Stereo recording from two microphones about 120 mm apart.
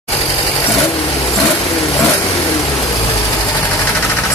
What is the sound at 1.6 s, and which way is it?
Vehicle, centre (ahead or behind).